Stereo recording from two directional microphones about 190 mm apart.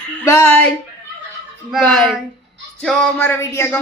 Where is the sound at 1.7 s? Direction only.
5° left (ahead or behind).